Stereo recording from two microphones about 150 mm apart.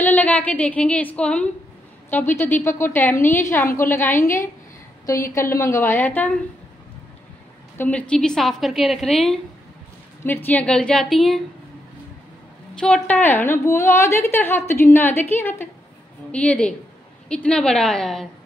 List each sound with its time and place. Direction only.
0.0 s a woman's voice: 10° left (ahead or behind)
7.7 s a woman's voice: 10° left (ahead or behind)
10.2 s a woman's voice: 15° left (ahead or behind)
12.7 s a woman's voice: 5° left (ahead or behind)